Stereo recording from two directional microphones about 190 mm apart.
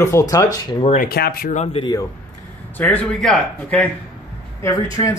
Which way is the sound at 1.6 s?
30° left (ahead or behind).